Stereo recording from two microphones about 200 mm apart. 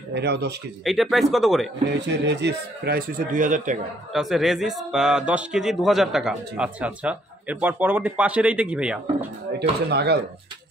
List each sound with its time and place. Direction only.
0.1 s speech: 55° right (ahead or behind)
0.8 s speech: centre (ahead or behind)
2.0 s speech: 60° right (ahead or behind); by 3.7 s 40° right (ahead or behind)
4.1 s speech: centre (ahead or behind)
9.6 s speech: 55° right (ahead or behind)